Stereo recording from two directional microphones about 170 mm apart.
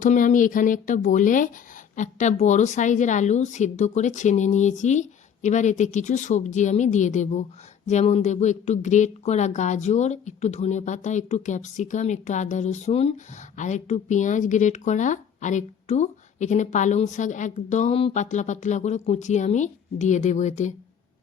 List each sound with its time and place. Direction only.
0.0 s speech: 50° left (ahead or behind)